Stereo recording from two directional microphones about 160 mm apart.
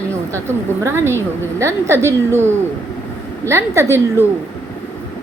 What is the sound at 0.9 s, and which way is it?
A woman's voice, 15° right (ahead or behind).